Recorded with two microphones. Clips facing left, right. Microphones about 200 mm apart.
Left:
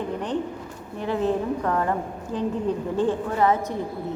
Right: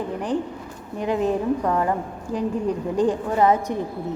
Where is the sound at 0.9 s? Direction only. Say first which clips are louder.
Right 2 dB; 15° right (ahead or behind).